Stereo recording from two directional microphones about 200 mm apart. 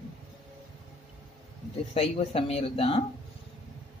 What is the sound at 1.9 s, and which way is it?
Speech, 30° left (ahead or behind).